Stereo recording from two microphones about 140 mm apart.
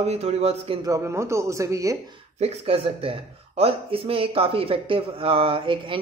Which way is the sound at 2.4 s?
45° right (ahead or behind).